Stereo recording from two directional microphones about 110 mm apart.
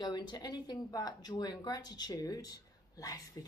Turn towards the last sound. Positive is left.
turn(degrees=35)  # may be behind; listen again after turning